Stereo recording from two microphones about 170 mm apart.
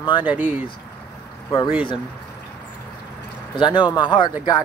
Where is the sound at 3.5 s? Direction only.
25° left (ahead or behind).